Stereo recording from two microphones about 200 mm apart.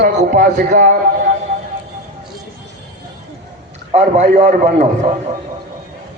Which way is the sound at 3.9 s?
35° right (ahead or behind).